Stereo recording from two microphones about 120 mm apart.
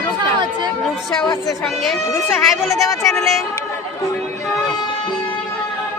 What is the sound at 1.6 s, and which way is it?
Speech, centre (ahead or behind).